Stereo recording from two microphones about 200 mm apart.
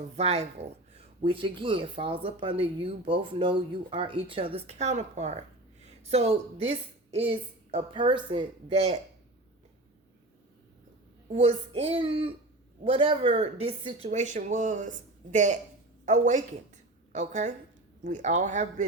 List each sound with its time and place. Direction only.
0.2 s speech: 30° right (ahead or behind)
11.3 s a woman's voice: 30° right (ahead or behind)